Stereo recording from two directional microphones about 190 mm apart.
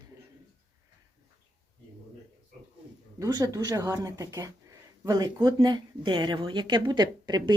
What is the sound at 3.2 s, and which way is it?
Speech, 20° right (ahead or behind).